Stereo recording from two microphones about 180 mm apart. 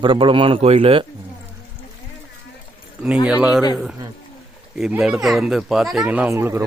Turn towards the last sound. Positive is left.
turn(degrees=-15)  # may be behind; listen again after turning